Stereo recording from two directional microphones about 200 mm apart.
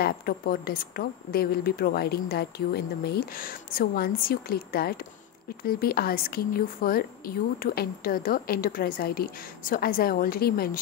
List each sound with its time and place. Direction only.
0.0 s a woman's voice: 45° left (ahead or behind)